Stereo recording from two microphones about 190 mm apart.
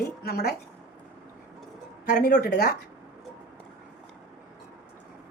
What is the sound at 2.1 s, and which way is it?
Speech, 55° left (ahead or behind).